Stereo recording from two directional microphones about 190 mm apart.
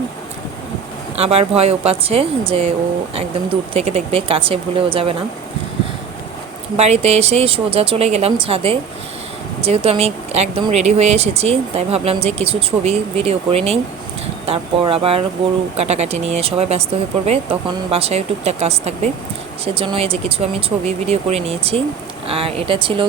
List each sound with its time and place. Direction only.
1.1 s speech: 35° right (ahead or behind)
3.8 s speech: 30° right (ahead or behind)
6.7 s speech: 35° right (ahead or behind)